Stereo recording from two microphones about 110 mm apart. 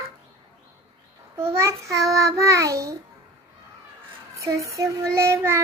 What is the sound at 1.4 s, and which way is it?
A child's voice, 20° right (ahead or behind).